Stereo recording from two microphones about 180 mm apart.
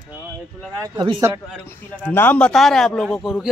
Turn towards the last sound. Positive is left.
turn(degrees=0)  # may be behind; listen again after turning